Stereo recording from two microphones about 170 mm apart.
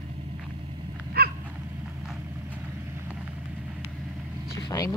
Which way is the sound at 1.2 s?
65° right (ahead or behind).